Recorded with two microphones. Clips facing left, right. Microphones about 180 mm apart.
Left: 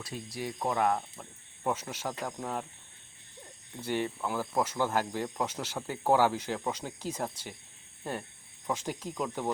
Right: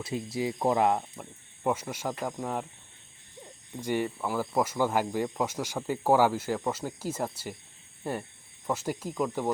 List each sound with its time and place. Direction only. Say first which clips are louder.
0.0 s speech: right 7 dB; 25° right (ahead or behind); by 2.6 s 5° right (ahead or behind)
3.8 s speech: right 3 dB; 10° right (ahead or behind)
8.6 s speech: right 3 dB; 5° right (ahead or behind)